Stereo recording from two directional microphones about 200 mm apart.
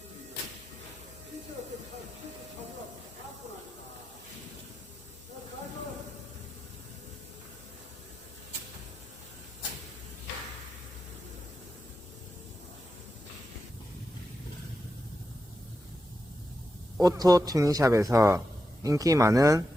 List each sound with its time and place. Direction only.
17.0 s a man's voice: 20° right (ahead or behind)